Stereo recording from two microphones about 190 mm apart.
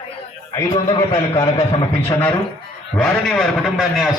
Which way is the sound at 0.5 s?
25° left (ahead or behind).